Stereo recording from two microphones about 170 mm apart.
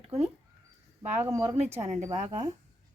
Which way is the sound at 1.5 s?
40° right (ahead or behind).